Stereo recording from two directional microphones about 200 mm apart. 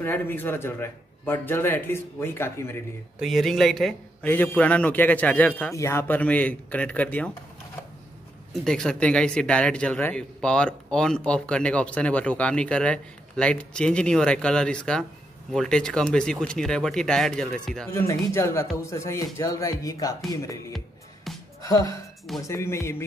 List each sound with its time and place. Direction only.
0.0 s a man's voice: 10° left (ahead or behind)
3.2 s a man's voice: centre (ahead or behind)
8.6 s speech: 5° left (ahead or behind)
18.0 s a man's voice: 15° left (ahead or behind)
20.7 s music: centre (ahead or behind)
21.6 s a man's voice: 15° left (ahead or behind)